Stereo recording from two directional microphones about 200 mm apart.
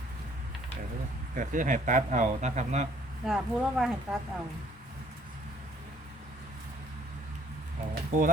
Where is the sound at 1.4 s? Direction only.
40° right (ahead or behind).